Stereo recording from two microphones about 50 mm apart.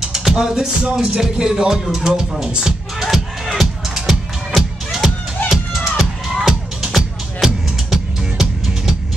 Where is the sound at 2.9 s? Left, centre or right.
Centre.